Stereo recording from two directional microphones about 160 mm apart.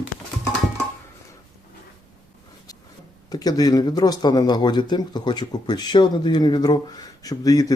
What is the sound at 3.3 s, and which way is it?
Speech, 25° left (ahead or behind).